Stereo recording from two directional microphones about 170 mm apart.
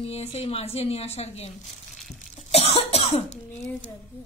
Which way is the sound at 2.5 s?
35° left (ahead or behind).